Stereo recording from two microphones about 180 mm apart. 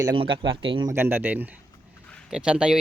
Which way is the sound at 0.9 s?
10° right (ahead or behind).